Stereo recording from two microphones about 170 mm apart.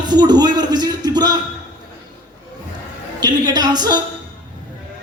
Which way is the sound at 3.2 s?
25° right (ahead or behind).